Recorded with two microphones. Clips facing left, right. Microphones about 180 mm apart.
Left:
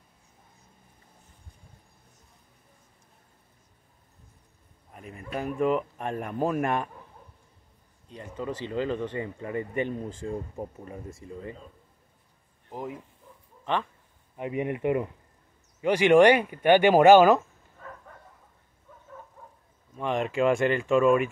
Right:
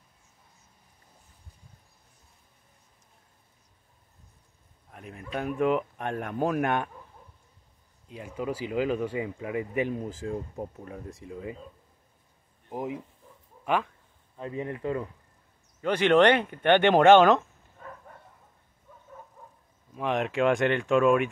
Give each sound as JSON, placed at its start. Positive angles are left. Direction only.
{"t": 4.9, "sound": "speech", "side_deg": 0}
{"t": 8.1, "sound": "speech", "side_deg": -10}
{"t": 12.6, "sound": "speech", "side_deg": -15}
{"t": 14.3, "sound": "speech", "side_deg": 15}
{"t": 20.0, "sound": "speech", "side_deg": 0}